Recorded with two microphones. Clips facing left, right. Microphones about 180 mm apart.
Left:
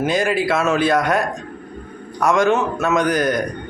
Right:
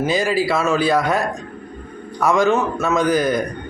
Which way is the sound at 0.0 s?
Centre (ahead or behind).